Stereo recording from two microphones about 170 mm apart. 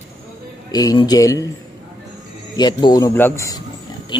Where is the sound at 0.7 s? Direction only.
25° left (ahead or behind).